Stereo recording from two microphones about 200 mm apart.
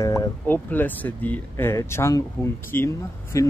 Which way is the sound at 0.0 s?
15° left (ahead or behind).